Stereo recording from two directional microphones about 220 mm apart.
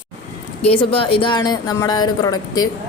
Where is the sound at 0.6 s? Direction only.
25° left (ahead or behind).